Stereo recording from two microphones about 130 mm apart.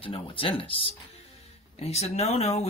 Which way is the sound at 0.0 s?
45° left (ahead or behind).